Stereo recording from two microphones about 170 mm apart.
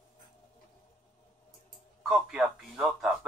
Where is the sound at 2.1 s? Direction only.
5° right (ahead or behind).